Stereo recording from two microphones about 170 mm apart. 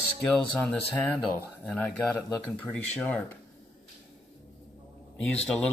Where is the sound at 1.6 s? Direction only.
Centre (ahead or behind).